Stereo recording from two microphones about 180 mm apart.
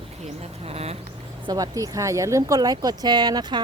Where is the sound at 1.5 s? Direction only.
20° right (ahead or behind).